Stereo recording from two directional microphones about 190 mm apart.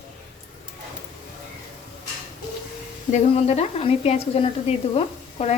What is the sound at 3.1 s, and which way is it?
Speech, 35° left (ahead or behind).